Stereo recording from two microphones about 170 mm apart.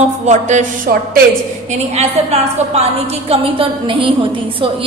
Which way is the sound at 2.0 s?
40° right (ahead or behind).